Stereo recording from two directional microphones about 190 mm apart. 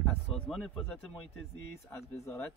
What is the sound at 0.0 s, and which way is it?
A man's voice, 5° left (ahead or behind).